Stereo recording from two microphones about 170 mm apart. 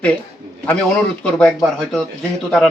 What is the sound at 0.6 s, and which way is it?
A man's voice, 5° left (ahead or behind).